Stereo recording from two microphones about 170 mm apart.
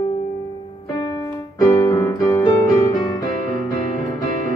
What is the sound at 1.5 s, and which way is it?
Music, 20° left (ahead or behind).